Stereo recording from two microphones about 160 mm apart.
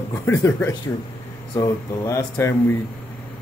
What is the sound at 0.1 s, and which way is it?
Speech, 20° left (ahead or behind).